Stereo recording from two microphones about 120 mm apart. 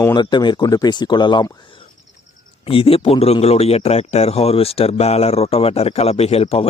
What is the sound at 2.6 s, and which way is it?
A man's voice, 50° left (ahead or behind).